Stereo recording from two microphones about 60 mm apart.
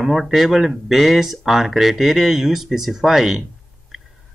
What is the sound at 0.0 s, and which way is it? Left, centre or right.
A man's voice, centre.